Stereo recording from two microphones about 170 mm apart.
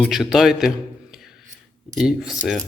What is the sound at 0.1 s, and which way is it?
Speech, centre (ahead or behind).